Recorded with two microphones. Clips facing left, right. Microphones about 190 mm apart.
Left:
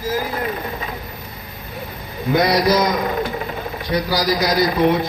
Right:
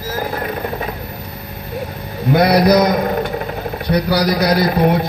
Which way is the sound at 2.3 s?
60° right (ahead or behind).